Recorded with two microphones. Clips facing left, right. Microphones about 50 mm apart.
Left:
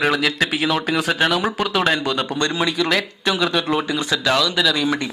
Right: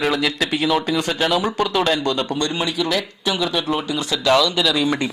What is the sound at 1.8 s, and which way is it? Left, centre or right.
A man's voice, centre.